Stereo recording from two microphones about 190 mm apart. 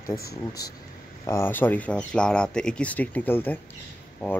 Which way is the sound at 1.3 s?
10° left (ahead or behind).